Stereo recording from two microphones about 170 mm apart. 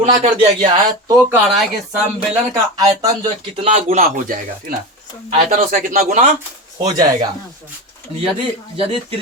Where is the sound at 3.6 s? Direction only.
45° right (ahead or behind).